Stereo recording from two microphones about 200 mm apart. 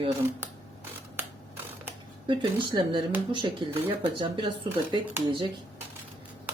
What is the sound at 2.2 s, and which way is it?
Speech, 25° right (ahead or behind).